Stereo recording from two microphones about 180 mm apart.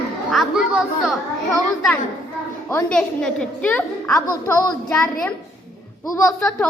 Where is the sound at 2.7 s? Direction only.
5° left (ahead or behind).